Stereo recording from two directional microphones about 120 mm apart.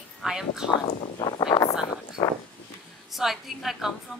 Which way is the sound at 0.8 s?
40° left (ahead or behind).